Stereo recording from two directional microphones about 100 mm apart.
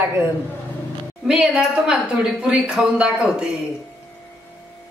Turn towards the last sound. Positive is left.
turn(degrees=-10)  # may be behind; listen again after turning